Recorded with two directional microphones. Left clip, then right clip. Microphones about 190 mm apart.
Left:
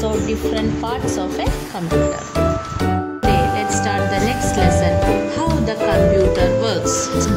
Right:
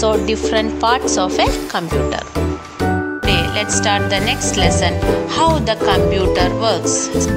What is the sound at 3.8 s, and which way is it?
Speech, 45° right (ahead or behind).